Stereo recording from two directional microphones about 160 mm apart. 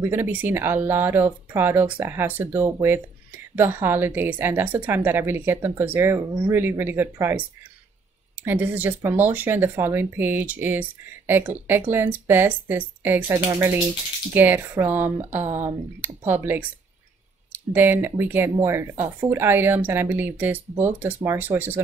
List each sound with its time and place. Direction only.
0.0 s speech: 15° right (ahead or behind)
8.5 s speech: 10° right (ahead or behind)